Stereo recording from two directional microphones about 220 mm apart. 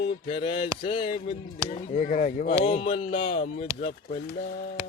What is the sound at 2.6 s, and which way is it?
Speech, 25° left (ahead or behind).